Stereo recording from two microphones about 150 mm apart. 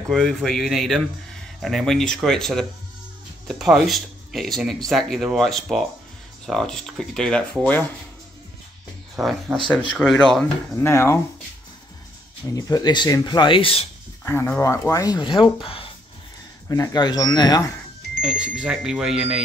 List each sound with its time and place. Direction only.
0.1 s speech: 5° left (ahead or behind)
9.1 s speech: centre (ahead or behind)
10.8 s speech: 15° left (ahead or behind)
12.5 s speech: 25° left (ahead or behind)
14.2 s speech: 15° left (ahead or behind); by 15.9 s 35° left (ahead or behind)
16.6 s speech: 20° left (ahead or behind)
18.2 s speech: 5° right (ahead or behind)